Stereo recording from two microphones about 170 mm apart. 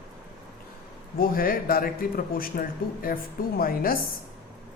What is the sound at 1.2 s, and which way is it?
A man's voice, 60° left (ahead or behind).